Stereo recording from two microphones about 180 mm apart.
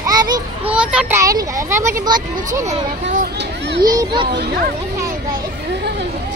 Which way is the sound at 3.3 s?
75° right (ahead or behind).